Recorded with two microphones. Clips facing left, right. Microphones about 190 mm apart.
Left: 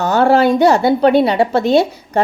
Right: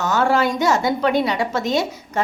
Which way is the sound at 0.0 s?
35° left (ahead or behind).